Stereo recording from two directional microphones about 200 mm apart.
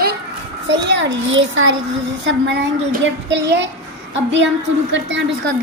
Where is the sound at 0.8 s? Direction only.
65° right (ahead or behind).